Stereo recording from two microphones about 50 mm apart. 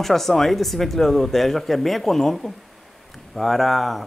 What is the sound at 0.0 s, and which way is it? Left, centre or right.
Speech, centre.